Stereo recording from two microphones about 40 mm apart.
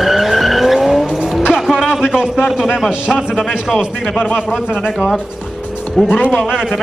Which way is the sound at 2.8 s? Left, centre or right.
Centre.